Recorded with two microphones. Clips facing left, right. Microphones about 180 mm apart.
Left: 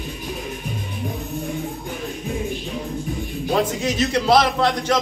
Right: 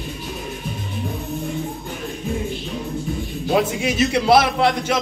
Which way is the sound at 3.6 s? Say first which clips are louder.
Right 1 dB; 10° right (ahead or behind).